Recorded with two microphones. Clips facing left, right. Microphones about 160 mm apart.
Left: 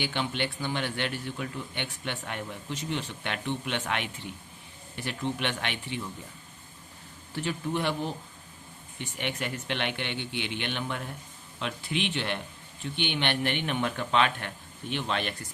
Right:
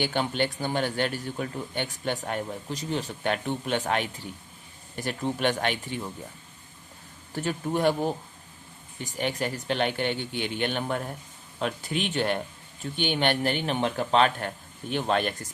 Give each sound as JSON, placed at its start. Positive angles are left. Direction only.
{"t": 0.0, "sound": "speech", "side_deg": -45}
{"t": 7.3, "sound": "speech", "side_deg": -45}